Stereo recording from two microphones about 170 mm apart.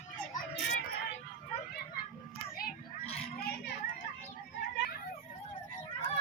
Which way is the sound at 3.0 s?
35° left (ahead or behind).